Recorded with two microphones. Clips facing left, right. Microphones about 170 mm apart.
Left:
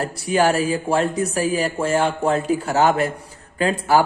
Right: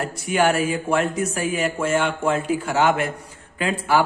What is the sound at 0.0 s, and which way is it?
A man's voice, 35° left (ahead or behind).